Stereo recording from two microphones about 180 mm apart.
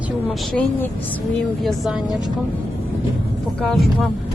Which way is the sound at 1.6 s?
Centre (ahead or behind).